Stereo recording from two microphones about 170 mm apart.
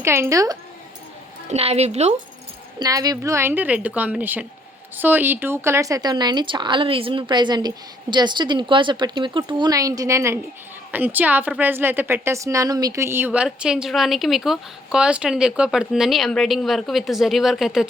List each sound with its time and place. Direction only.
0.0 s a woman's voice: 15° right (ahead or behind)
1.5 s speech: 40° right (ahead or behind)
2.7 s a woman's voice: 20° right (ahead or behind); by 17.8 s centre (ahead or behind)